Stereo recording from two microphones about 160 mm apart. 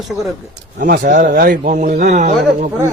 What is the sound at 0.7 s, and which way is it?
Speech, 55° right (ahead or behind).